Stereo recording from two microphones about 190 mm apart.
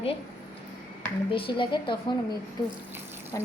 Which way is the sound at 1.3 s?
25° left (ahead or behind).